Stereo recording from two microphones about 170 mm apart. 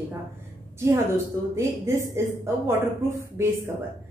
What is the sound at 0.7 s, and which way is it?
A woman's voice, 15° right (ahead or behind).